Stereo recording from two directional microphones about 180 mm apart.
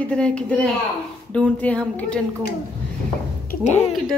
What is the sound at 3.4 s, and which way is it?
Speech, 40° left (ahead or behind).